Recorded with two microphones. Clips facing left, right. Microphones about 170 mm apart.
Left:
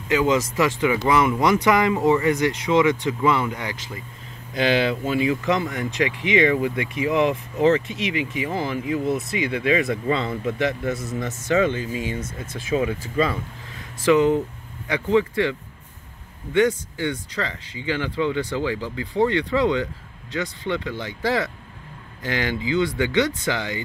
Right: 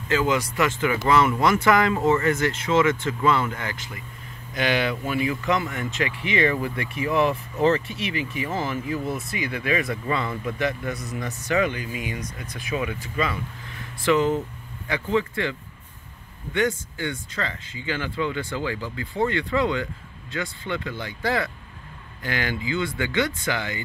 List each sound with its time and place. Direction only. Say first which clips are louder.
0.1 s speech: left 3 dB; 20° left (ahead or behind)
14.0 s speech: left 4 dB; 20° left (ahead or behind)
16.5 s speech: left 5 dB; 20° left (ahead or behind)